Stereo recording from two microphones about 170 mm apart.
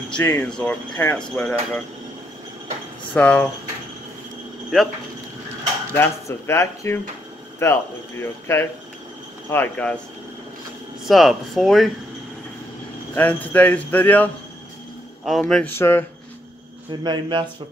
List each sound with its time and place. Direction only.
0.1 s speech: 5° left (ahead or behind)
3.2 s speech: 5° left (ahead or behind)
5.9 s speech: 15° left (ahead or behind)
11.1 s speech: centre (ahead or behind)
13.1 s speech: 10° left (ahead or behind)
17.0 s speech: 25° right (ahead or behind)